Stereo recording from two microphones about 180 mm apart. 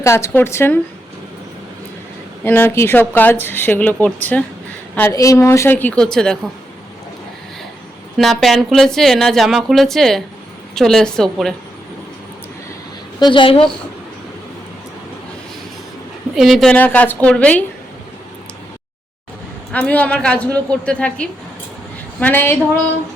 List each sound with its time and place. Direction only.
0.0 s speech: 15° left (ahead or behind)
2.4 s speech: 10° left (ahead or behind)
8.2 s speech: centre (ahead or behind)
13.1 s a woman's voice: 25° left (ahead or behind)
16.3 s speech: centre (ahead or behind)
19.7 s speech: 10° left (ahead or behind)